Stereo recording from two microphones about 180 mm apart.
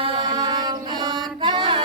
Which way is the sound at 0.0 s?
25° right (ahead or behind).